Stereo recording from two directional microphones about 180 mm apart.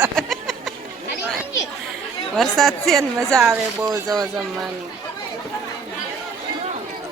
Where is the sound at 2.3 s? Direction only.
Centre (ahead or behind).